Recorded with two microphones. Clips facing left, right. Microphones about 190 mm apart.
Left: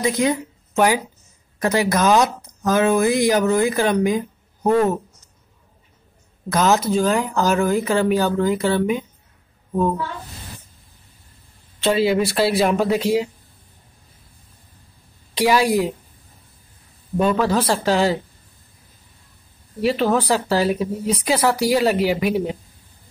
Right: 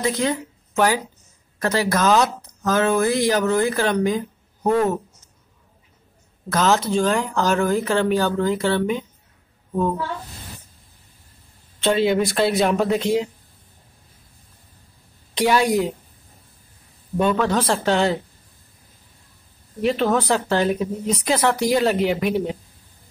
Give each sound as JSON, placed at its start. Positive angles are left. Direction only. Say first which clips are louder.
{"t": 0.0, "sound": "speech", "louder": "left 2 dB", "side_deg": 15}
{"t": 6.5, "sound": "a woman's voice", "louder": "left 1 dB", "side_deg": 10}
{"t": 11.8, "sound": "speech", "louder": "left 1 dB", "side_deg": 0}
{"t": 15.3, "sound": "a woman's voice", "louder": "left 1 dB", "side_deg": 5}
{"t": 17.2, "sound": "speech", "louder": "left 1 dB", "side_deg": 5}
{"t": 19.8, "sound": "speech", "louder": "left 1 dB", "side_deg": 5}